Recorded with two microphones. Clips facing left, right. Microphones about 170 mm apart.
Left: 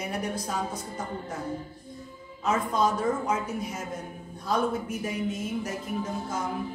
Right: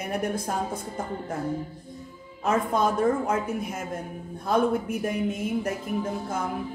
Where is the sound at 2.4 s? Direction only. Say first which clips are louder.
Right 2 dB; 55° right (ahead or behind).